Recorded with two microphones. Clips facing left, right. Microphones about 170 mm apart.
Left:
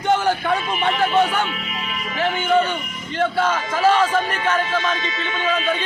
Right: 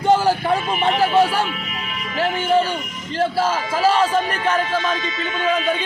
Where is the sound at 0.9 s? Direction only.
30° right (ahead or behind).